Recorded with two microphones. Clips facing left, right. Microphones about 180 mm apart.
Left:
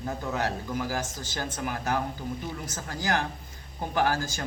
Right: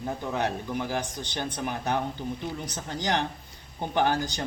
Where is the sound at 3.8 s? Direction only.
25° right (ahead or behind).